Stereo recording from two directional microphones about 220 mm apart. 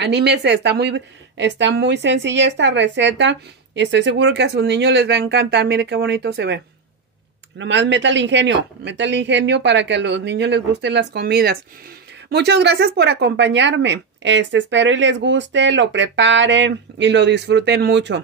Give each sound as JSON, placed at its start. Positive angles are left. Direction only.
{"t": 0.0, "sound": "a woman's voice", "side_deg": -50}